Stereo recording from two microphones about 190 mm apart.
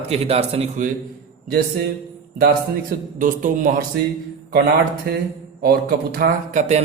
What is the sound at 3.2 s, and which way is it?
Speech, 45° right (ahead or behind).